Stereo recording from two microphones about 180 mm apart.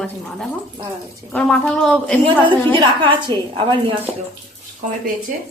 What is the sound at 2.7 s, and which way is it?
A woman's voice, 25° right (ahead or behind).